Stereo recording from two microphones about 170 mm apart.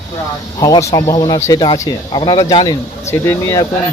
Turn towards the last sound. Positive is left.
turn(degrees=15)  # may be behind; listen again after turning